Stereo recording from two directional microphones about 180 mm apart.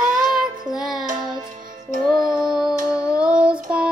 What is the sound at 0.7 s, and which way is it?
Child singing, centre (ahead or behind).